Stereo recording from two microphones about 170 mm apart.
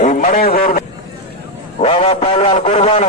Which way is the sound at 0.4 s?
55° left (ahead or behind).